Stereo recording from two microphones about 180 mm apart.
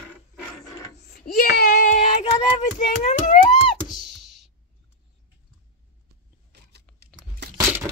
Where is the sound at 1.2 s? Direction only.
60° left (ahead or behind).